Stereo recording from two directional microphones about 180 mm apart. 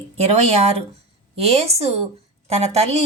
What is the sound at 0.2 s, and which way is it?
Speech, 35° right (ahead or behind).